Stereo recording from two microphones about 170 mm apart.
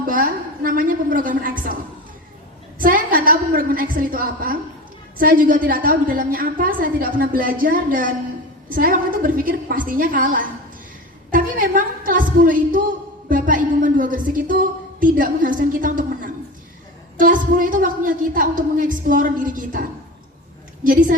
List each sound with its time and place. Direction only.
0.0 s a woman's voice: 55° right (ahead or behind)
2.8 s a woman's voice: 55° right (ahead or behind)
20.8 s a woman's voice: 55° right (ahead or behind)